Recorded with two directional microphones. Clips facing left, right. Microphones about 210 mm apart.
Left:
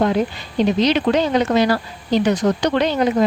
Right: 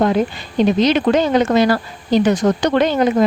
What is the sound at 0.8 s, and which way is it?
Speech, 50° right (ahead or behind).